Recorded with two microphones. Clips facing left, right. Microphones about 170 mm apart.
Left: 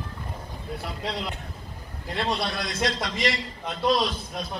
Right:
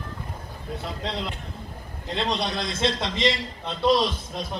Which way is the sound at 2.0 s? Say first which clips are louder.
Right 1 dB; 20° right (ahead or behind).